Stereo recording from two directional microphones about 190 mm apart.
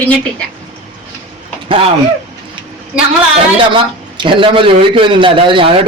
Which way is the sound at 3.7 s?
25° right (ahead or behind).